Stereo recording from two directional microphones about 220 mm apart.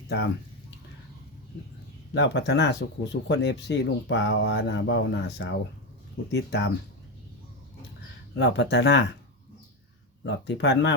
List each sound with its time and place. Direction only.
2.1 s speech: 50° left (ahead or behind)
8.4 s speech: 50° left (ahead or behind)
10.2 s speech: 50° left (ahead or behind)